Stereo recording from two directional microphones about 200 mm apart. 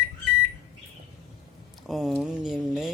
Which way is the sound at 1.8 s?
Centre (ahead or behind).